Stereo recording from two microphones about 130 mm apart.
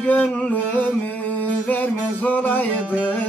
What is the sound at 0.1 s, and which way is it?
Music, 10° left (ahead or behind).